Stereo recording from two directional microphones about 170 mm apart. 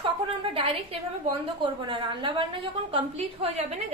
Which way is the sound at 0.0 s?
35° right (ahead or behind).